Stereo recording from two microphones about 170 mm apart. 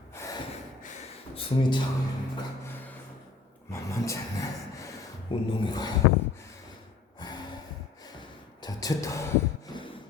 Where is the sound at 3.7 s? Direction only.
15° left (ahead or behind).